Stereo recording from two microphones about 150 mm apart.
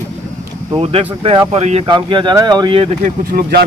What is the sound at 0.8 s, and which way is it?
Speech, 40° right (ahead or behind).